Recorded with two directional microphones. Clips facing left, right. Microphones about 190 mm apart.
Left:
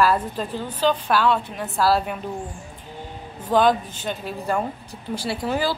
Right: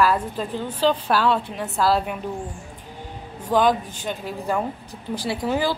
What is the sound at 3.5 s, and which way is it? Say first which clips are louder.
A woman's voice: left 1 dB; 15° right (ahead or behind).